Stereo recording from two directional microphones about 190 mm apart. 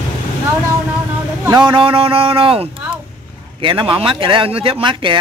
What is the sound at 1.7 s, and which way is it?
Speech, 30° right (ahead or behind).